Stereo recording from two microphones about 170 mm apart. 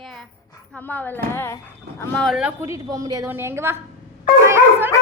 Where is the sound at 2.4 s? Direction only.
10° right (ahead or behind).